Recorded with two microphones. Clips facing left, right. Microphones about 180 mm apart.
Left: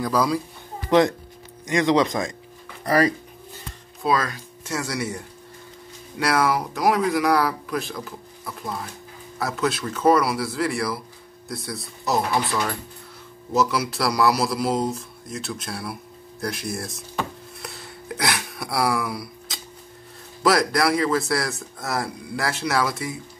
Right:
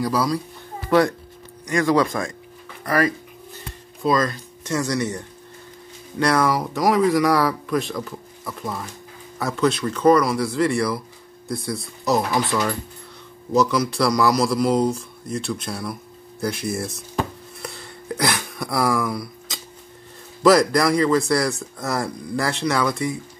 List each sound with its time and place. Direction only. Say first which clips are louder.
0.0 s speech: even; 5° right (ahead or behind)
0.8 s speech: even; 20° left (ahead or behind)
2.8 s speech: left 1 dB; 30° left (ahead or behind)
4.0 s speech: right 3 dB; 5° left (ahead or behind)
9.4 s speech: right 4 dB; centre (ahead or behind)
13.5 s speech: right 3 dB; 5° left (ahead or behind)
17.6 s a sound: right 5 dB; centre (ahead or behind)
20.4 s speech: right 4 dB; centre (ahead or behind)